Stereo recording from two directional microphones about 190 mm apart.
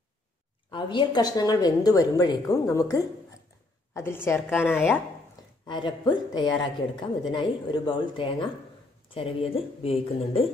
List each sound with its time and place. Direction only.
0.7 s a woman's voice: 25° left (ahead or behind); by 5.0 s 10° left (ahead or behind)
5.7 s a woman's voice: 25° left (ahead or behind)